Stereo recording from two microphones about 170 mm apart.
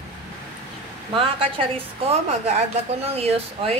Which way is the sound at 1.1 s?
30° right (ahead or behind).